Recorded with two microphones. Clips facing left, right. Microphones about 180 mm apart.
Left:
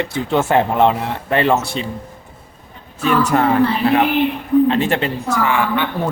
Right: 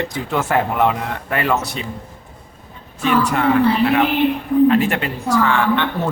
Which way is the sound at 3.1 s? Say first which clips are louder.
Left 2 dB; 45° left (ahead or behind).